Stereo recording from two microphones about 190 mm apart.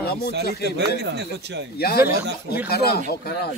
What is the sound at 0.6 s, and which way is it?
Speech, 60° right (ahead or behind).